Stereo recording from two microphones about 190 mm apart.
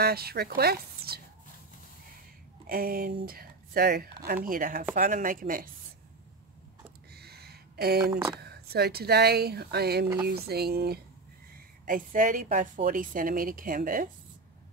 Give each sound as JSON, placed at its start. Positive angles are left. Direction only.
{"t": 0.0, "sound": "speech", "side_deg": -55}
{"t": 2.6, "sound": "a woman's voice", "side_deg": -50}
{"t": 7.2, "sound": "a sound", "side_deg": -55}
{"t": 8.1, "sound": "speech", "side_deg": -20}
{"t": 8.4, "sound": "a woman's voice", "side_deg": -55}